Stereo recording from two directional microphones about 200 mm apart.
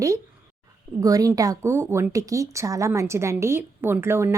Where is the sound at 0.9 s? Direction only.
15° right (ahead or behind).